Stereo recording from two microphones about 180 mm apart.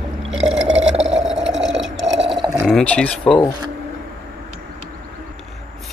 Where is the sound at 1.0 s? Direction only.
5° right (ahead or behind).